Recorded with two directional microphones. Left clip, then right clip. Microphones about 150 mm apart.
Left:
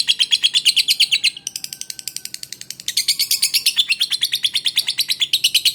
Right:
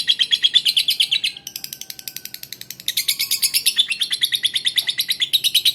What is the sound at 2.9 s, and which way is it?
Bird, 30° left (ahead or behind).